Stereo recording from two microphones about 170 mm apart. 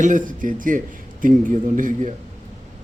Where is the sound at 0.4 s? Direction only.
50° right (ahead or behind).